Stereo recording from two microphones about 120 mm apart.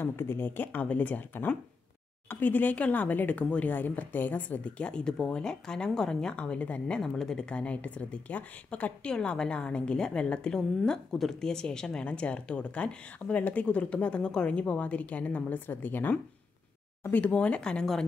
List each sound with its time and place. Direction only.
0.0 s speech: 20° left (ahead or behind)